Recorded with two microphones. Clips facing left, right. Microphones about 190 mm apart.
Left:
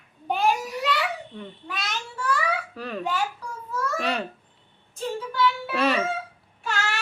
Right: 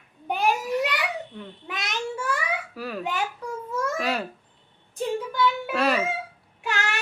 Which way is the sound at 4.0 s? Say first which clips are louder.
Even; 5° right (ahead or behind).